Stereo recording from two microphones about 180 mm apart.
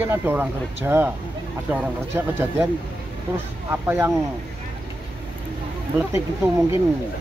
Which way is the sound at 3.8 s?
15° right (ahead or behind).